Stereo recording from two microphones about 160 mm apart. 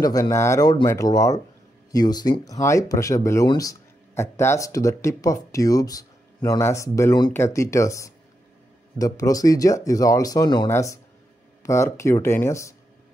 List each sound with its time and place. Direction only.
0.0 s speech: 20° left (ahead or behind)